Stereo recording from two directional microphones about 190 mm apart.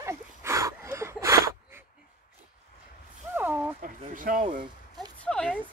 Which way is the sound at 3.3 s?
10° right (ahead or behind).